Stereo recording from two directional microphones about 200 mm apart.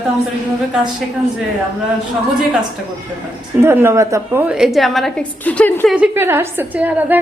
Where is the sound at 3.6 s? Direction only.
10° right (ahead or behind); by 5.9 s 10° left (ahead or behind).